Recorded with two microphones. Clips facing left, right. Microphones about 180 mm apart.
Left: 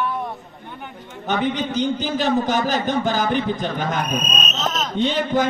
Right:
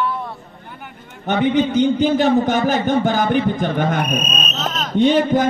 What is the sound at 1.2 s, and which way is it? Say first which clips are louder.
A man's voice: right 6 dB; 55° right (ahead or behind).